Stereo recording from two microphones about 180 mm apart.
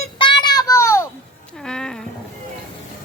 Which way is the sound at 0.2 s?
25° left (ahead or behind).